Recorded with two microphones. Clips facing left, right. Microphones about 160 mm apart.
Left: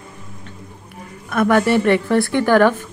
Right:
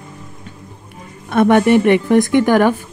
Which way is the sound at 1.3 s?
25° right (ahead or behind).